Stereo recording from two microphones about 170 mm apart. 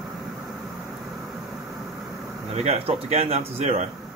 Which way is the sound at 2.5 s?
35° right (ahead or behind).